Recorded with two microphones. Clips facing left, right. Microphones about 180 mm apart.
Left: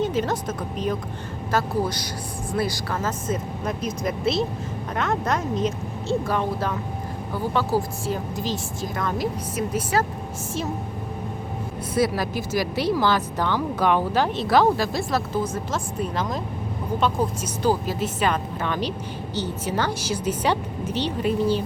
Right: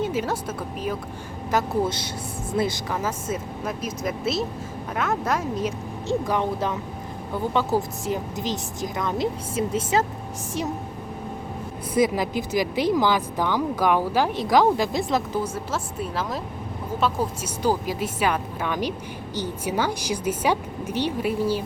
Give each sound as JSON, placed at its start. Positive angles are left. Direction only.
{"t": 0.0, "sound": "speech", "side_deg": -10}
{"t": 1.5, "sound": "a woman's voice", "side_deg": -20}
{"t": 3.0, "sound": "a woman's voice", "side_deg": -10}
{"t": 11.9, "sound": "speech", "side_deg": -15}